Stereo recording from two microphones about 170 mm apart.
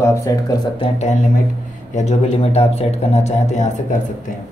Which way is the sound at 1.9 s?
40° left (ahead or behind).